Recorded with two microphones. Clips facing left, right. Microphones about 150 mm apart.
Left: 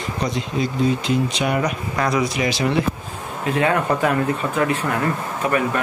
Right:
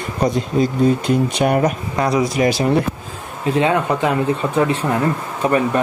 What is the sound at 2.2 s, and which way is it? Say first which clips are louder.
Speech: right 4 dB; 45° right (ahead or behind).